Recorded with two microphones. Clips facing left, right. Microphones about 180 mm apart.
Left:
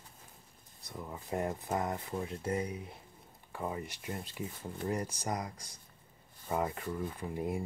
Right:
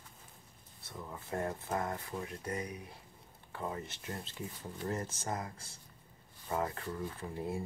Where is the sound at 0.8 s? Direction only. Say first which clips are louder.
Left 2 dB; 15° left (ahead or behind).